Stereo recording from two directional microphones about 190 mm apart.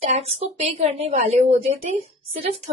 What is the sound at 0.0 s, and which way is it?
A woman's voice, 35° right (ahead or behind).